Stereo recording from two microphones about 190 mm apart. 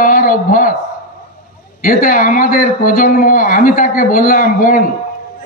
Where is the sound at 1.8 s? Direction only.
45° left (ahead or behind).